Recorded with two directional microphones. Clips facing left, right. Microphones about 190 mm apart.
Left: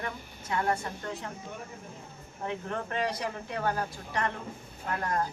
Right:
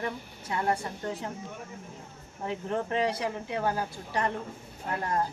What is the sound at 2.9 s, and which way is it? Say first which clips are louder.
Speech: right 3 dB; 30° right (ahead or behind).